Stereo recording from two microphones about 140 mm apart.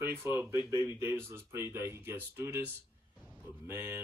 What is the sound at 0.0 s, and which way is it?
Speech, 20° right (ahead or behind).